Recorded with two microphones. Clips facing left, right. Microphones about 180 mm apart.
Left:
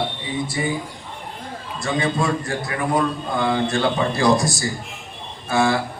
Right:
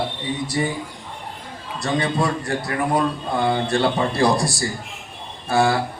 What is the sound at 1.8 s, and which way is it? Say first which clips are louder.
A man's voice: right 1 dB; 35° right (ahead or behind).